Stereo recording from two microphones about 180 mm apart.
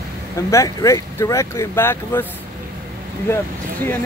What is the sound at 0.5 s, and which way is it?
Speech, 15° left (ahead or behind).